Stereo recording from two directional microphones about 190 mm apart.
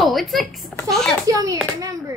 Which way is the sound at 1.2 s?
20° right (ahead or behind).